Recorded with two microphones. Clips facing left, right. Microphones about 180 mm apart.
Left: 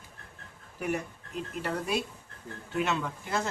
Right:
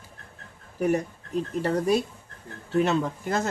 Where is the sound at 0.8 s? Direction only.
35° right (ahead or behind).